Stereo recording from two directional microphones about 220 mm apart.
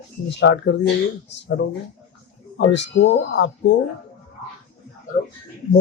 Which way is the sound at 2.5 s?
55° left (ahead or behind).